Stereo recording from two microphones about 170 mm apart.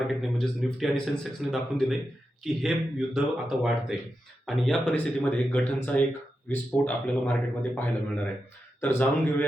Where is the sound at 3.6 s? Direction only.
Centre (ahead or behind).